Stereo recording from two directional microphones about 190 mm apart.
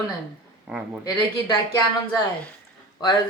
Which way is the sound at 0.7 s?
5° right (ahead or behind).